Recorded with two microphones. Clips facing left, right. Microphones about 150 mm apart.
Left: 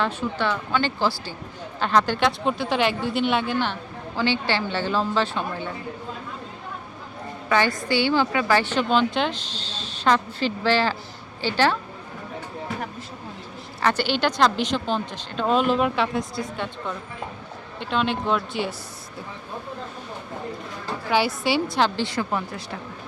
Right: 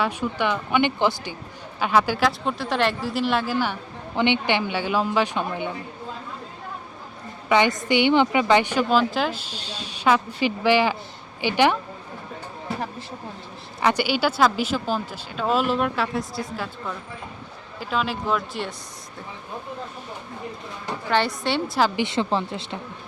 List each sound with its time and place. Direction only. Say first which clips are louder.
0.0 s speech: right 1 dB; 15° right (ahead or behind)
1.8 s speech: even; 10° right (ahead or behind)
4.1 s speech: right 2 dB; 20° right (ahead or behind)
7.5 s a woman's voice: right 2 dB; 20° right (ahead or behind)
13.8 s speech: right 1 dB; 10° right (ahead or behind)
21.1 s speech: left 1 dB; 5° left (ahead or behind)
21.8 s a woman's voice: right 2 dB; 20° right (ahead or behind)